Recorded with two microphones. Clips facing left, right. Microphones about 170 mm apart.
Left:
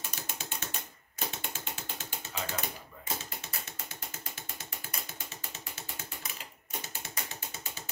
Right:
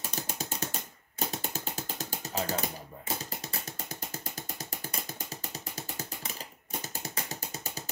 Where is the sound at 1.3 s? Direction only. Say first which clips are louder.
Right 5 dB; 40° right (ahead or behind).